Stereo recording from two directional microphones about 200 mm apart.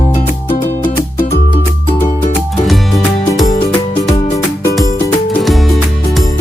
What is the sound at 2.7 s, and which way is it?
Music, centre (ahead or behind).